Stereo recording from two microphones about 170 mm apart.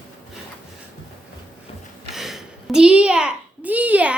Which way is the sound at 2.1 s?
Centre (ahead or behind).